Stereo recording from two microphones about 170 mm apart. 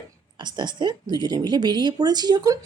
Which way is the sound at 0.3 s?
25° right (ahead or behind).